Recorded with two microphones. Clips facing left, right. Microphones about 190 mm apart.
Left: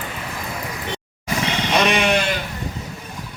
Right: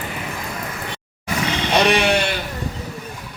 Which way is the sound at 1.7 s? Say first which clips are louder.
Right 2 dB; 35° right (ahead or behind).